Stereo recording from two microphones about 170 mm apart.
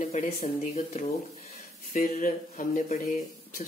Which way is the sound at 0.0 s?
45° left (ahead or behind).